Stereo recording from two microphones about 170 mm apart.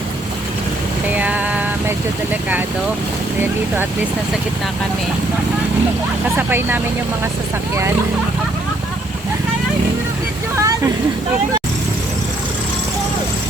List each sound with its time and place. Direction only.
1.1 s a sound: 10° right (ahead or behind)
6.3 s speech: 10° right (ahead or behind)
10.6 s vehicle: 20° right (ahead or behind)